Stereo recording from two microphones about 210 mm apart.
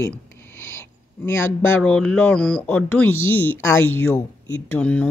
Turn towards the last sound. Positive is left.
turn(degrees=5)  # may be behind; listen again after turning